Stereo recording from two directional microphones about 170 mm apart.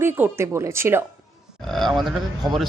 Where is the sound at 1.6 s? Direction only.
Centre (ahead or behind).